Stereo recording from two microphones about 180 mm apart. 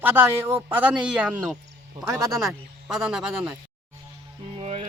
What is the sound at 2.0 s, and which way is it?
Speech, 15° right (ahead or behind).